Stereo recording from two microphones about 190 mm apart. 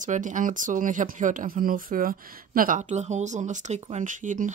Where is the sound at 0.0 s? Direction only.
40° right (ahead or behind).